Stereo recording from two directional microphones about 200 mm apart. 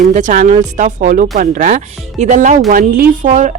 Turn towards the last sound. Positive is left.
turn(degrees=-35)  # may be behind; listen again after turning